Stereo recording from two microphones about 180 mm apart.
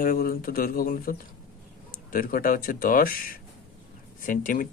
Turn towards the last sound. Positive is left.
turn(degrees=50)  # may be behind; listen again after turning